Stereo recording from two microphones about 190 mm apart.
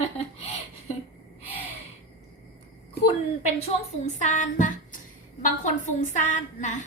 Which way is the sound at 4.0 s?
40° left (ahead or behind).